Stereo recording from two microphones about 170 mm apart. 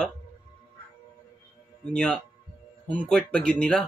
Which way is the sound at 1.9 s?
5° left (ahead or behind).